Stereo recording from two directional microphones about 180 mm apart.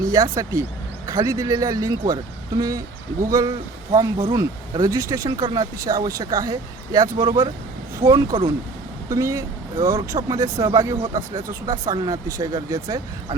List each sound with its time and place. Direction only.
0.1 s speech: 20° right (ahead or behind)